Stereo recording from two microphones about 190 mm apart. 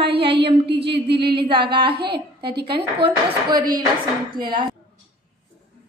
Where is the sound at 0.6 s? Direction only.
60° right (ahead or behind).